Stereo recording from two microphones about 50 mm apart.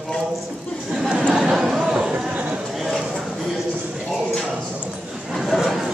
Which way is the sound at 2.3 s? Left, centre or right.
Right.